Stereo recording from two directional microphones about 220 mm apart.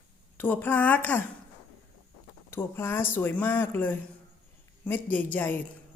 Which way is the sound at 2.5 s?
10° left (ahead or behind).